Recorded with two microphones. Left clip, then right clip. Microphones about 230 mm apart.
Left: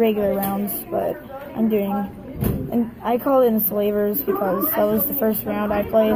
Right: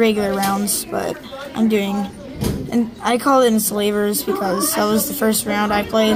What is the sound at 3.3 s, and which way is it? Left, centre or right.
A woman's voice, right.